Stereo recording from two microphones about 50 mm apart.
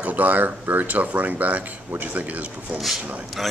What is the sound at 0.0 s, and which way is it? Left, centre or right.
Speech, right.